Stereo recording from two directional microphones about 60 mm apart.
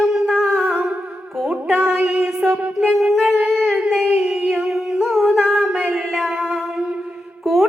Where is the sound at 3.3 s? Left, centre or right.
Centre.